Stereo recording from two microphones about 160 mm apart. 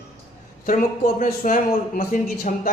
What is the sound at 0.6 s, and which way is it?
Speech, 60° left (ahead or behind).